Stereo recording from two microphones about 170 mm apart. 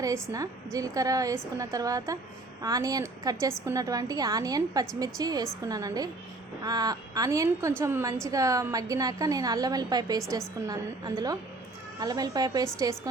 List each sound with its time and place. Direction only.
0.0 s a woman's voice: 20° right (ahead or behind)